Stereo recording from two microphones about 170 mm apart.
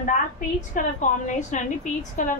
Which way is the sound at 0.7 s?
45° left (ahead or behind).